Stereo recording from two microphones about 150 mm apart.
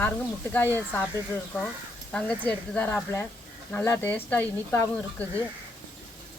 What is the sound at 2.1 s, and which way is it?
Speech, 10° left (ahead or behind).